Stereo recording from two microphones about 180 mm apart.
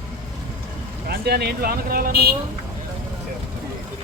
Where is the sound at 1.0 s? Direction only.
60° right (ahead or behind).